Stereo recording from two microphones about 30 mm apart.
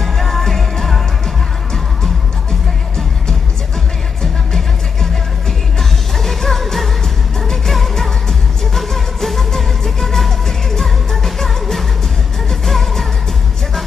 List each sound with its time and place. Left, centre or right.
0.0 s music: centre
4.2 s music: centre
5.8 s music: centre
7.4 s music of asia: centre
10.7 s music: centre